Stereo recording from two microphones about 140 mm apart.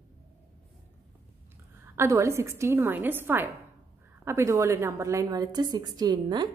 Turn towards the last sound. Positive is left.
turn(degrees=-30)  # may be behind; listen again after turning